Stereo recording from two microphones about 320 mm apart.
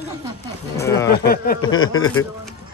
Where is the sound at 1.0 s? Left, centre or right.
Left.